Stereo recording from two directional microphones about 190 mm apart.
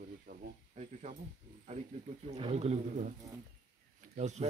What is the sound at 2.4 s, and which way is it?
Speech, 35° right (ahead or behind).